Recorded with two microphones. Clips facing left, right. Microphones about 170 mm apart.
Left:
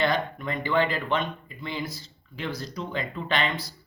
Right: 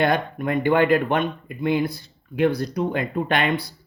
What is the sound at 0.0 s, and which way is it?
Speech, 55° right (ahead or behind).